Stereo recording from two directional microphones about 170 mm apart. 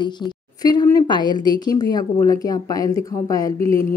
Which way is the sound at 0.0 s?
25° left (ahead or behind).